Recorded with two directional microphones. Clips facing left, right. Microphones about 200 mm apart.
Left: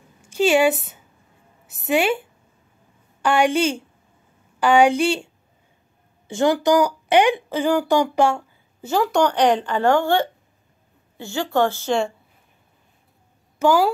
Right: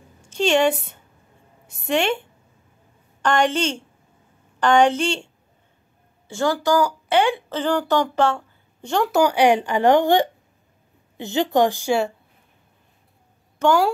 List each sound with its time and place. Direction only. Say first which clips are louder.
0.2 s a woman's voice: left 2 dB; 5° left (ahead or behind)
6.2 s a woman's voice: left 3 dB; 20° left (ahead or behind); by 12.1 s 10° right (ahead or behind)
13.6 s speech: left 1 dB; centre (ahead or behind)